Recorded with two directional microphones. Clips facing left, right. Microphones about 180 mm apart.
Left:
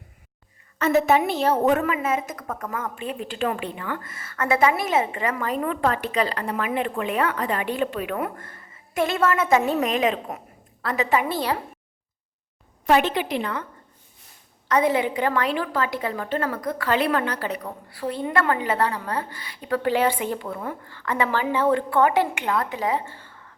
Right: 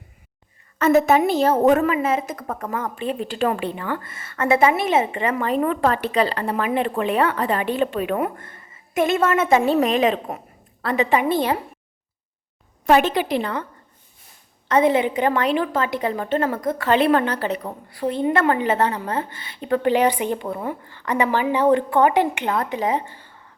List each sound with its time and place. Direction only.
0.8 s a woman's voice: 45° right (ahead or behind); by 11.6 s 20° right (ahead or behind)
12.8 s a woman's voice: 45° right (ahead or behind)
14.7 s a woman's voice: 25° right (ahead or behind)